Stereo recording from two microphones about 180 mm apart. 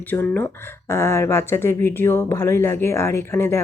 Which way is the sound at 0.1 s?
10° left (ahead or behind).